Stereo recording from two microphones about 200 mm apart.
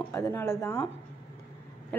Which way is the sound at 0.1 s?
15° left (ahead or behind).